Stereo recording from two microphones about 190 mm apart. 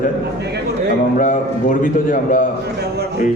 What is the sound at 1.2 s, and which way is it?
A man's voice, 40° left (ahead or behind).